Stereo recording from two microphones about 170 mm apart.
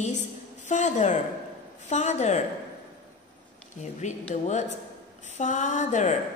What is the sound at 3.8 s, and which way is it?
Speech, 45° left (ahead or behind).